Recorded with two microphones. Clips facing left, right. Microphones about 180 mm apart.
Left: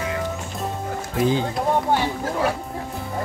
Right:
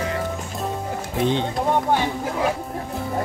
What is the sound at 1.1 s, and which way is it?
Speech, 5° left (ahead or behind).